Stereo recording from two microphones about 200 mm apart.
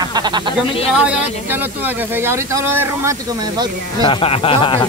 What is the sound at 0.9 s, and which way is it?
Speech, 5° right (ahead or behind).